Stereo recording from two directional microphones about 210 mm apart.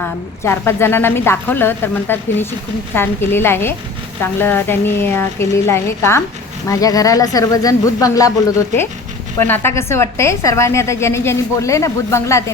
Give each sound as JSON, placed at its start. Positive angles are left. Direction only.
{"t": 0.0, "sound": "a woman's voice", "side_deg": 10}
{"t": 9.4, "sound": "a woman's voice", "side_deg": 10}